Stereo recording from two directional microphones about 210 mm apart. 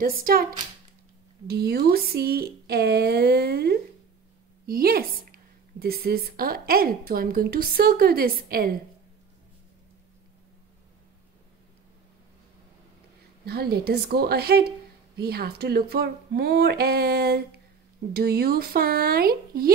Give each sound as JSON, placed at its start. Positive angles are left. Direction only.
{"t": 0.0, "sound": "a woman's voice", "side_deg": -45}
{"t": 1.5, "sound": "a woman's voice", "side_deg": -50}
{"t": 13.5, "sound": "a woman's voice", "side_deg": -50}